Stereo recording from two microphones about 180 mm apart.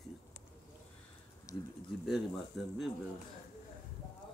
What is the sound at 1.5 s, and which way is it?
Speech, 20° left (ahead or behind).